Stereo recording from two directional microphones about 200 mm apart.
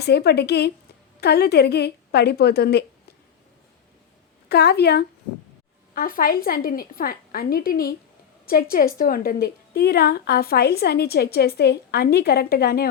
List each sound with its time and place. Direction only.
0.0 s a woman's voice: 55° left (ahead or behind)
4.4 s a woman's voice: 55° left (ahead or behind)